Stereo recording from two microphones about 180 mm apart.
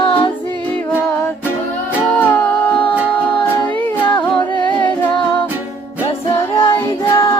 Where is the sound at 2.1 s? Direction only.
10° left (ahead or behind).